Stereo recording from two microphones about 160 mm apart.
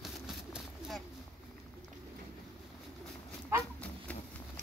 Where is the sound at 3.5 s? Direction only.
15° right (ahead or behind).